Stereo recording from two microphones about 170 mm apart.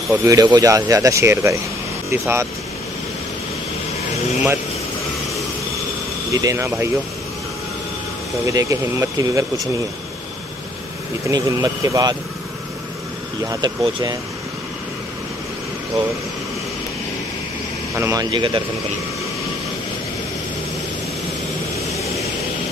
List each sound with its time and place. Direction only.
0.1 s speech: 15° right (ahead or behind)
6.3 s speech: 20° right (ahead or behind)
8.5 s speech: 20° right (ahead or behind)
11.2 s speech: 20° right (ahead or behind)
13.5 s speech: 25° right (ahead or behind)
17.9 s speech: 15° right (ahead or behind)
18.3 s speech: 30° right (ahead or behind)